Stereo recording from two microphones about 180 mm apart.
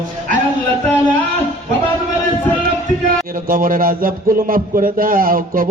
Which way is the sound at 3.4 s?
50° right (ahead or behind).